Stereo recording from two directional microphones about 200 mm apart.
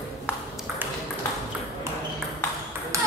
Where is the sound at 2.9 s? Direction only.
15° right (ahead or behind).